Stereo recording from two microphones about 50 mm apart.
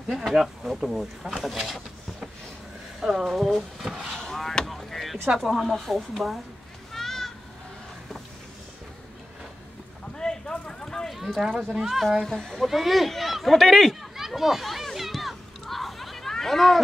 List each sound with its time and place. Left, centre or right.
0.4 s speech: centre
3.0 s speech: centre
4.2 s a sound: centre
5.4 s speech: centre
6.9 s children playing: centre
10.1 s a sound: centre
11.1 s speech: centre
12.3 s speech: centre
12.6 s a sound: centre